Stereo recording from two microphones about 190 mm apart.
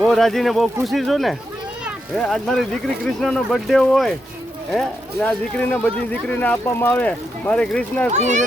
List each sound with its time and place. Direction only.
0.0 s speech: centre (ahead or behind)
8.1 s speech: 40° right (ahead or behind)